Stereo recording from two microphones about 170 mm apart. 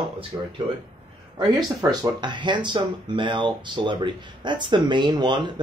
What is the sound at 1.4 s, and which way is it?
Speech, 25° right (ahead or behind).